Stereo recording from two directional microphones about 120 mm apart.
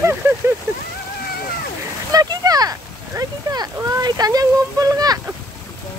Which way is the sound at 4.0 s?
35° right (ahead or behind).